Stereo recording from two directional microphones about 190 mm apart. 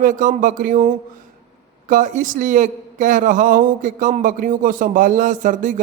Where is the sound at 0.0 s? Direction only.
45° right (ahead or behind).